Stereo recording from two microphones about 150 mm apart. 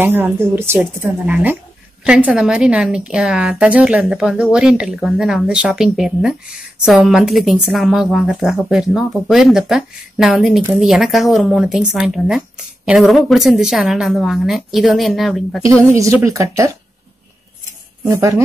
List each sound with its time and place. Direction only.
0.0 s a woman's voice: 15° right (ahead or behind)
15.9 s speech: 20° right (ahead or behind)
18.0 s speech: 20° right (ahead or behind)